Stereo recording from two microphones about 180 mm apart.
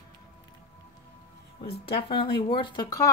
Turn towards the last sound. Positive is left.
turn(degrees=20)  # may be behind; listen again after turning